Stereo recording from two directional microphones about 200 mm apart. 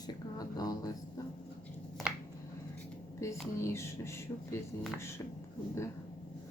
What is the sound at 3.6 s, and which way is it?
Speech, 15° left (ahead or behind).